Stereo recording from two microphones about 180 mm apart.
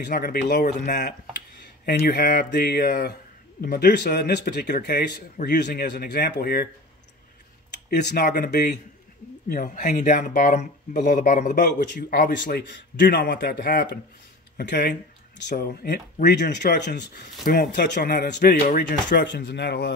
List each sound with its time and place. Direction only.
0.0 s speech: 55° left (ahead or behind)
1.9 s speech: 55° left (ahead or behind)
7.9 s speech: 60° left (ahead or behind)
9.5 s speech: 45° left (ahead or behind)
11.9 s speech: 60° left (ahead or behind)
12.6 s speech: 75° left (ahead or behind)
13.2 s speech: 60° left (ahead or behind)
15.5 s speech: 55° left (ahead or behind)
19.2 s speech: 75° left (ahead or behind)